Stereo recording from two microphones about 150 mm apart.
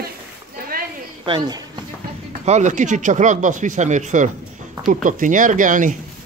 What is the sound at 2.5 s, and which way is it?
Speech, 55° right (ahead or behind).